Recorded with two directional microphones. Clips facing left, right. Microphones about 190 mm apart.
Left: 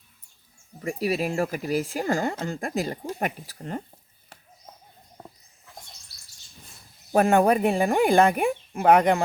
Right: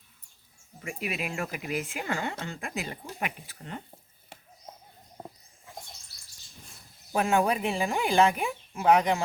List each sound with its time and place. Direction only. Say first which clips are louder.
0.8 s speech: left 8 dB; 40° left (ahead or behind)
7.1 s speech: left 6 dB; 55° left (ahead or behind)